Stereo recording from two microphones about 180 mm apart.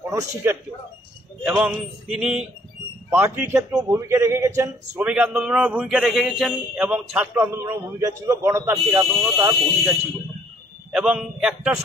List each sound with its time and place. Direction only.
0.1 s a man's voice: 15° right (ahead or behind)
1.4 s a sound: 5° right (ahead or behind)
3.1 s a man's voice: 10° right (ahead or behind)
10.9 s a man's voice: centre (ahead or behind)